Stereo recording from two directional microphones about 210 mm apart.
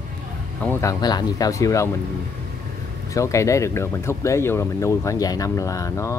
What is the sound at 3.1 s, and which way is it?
Speech, 15° left (ahead or behind).